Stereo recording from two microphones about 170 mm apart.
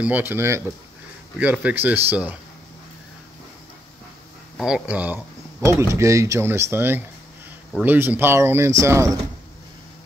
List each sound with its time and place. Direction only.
0.0 s speech: 10° right (ahead or behind)
4.6 s speech: 5° right (ahead or behind)